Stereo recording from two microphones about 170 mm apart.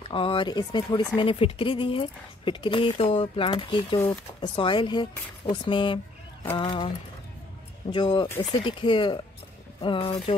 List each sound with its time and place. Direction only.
0.1 s speech: 30° left (ahead or behind)
7.9 s speech: 25° left (ahead or behind)